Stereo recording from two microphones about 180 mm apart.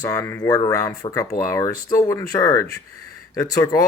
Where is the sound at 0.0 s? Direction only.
15° left (ahead or behind).